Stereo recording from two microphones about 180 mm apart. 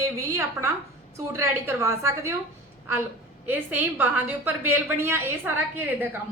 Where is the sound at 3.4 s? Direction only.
10° right (ahead or behind).